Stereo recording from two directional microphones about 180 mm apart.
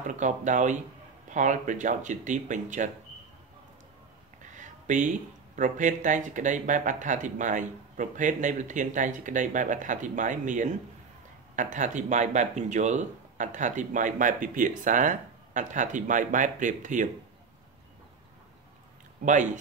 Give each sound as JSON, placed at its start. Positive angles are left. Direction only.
{"t": 0.0, "sound": "speech", "side_deg": -45}
{"t": 4.4, "sound": "a sound", "side_deg": -45}
{"t": 5.6, "sound": "speech", "side_deg": -45}
{"t": 19.2, "sound": "speech", "side_deg": -45}